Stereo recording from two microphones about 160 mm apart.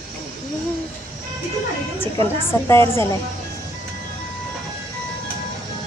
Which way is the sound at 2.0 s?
15° left (ahead or behind).